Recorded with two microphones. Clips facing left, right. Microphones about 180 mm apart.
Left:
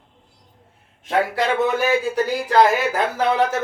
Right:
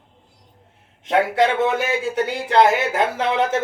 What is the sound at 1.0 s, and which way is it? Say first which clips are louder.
A man's voice: right 3 dB; 25° right (ahead or behind).